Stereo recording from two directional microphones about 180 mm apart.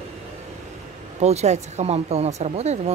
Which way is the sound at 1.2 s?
35° right (ahead or behind).